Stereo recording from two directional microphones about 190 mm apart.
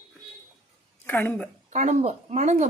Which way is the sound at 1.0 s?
10° left (ahead or behind).